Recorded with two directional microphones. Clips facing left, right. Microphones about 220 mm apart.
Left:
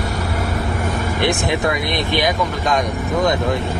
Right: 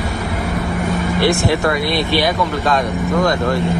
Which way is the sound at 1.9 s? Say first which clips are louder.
Right 2 dB; 20° left (ahead or behind).